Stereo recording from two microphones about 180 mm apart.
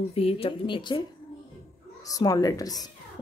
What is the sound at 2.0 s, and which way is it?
Speech, 20° left (ahead or behind).